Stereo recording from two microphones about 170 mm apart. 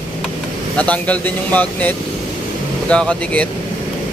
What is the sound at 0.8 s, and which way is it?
Speech, 10° left (ahead or behind).